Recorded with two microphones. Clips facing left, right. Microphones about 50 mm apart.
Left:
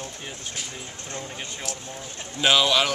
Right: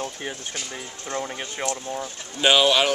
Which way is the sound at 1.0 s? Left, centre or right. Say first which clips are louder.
Right 8 dB; right.